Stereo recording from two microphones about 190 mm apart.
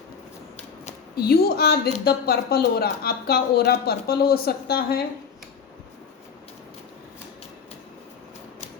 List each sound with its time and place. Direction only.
1.1 s a woman's voice: 55° left (ahead or behind)